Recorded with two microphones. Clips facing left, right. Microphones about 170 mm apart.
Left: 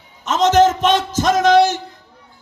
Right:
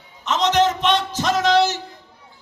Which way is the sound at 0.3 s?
45° left (ahead or behind).